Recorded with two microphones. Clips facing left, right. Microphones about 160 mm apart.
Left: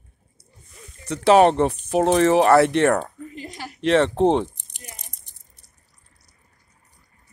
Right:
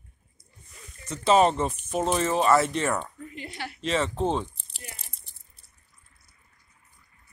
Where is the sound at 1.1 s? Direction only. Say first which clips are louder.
Left 6 dB; 70° left (ahead or behind).